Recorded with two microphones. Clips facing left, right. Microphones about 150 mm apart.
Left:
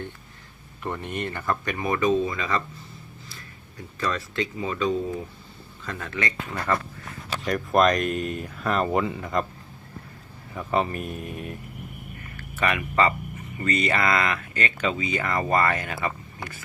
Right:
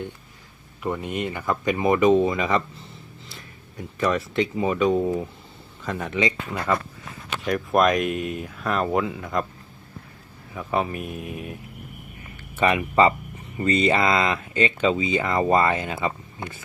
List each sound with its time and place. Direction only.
0.8 s speech: 10° right (ahead or behind)
3.9 s speech: 20° right (ahead or behind)
7.4 s speech: centre (ahead or behind)
10.5 s speech: centre (ahead or behind)
12.4 s speech: 25° right (ahead or behind)